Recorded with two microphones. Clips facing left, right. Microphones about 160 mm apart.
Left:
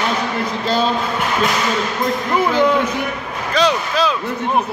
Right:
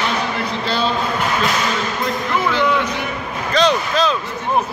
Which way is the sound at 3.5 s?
10° left (ahead or behind).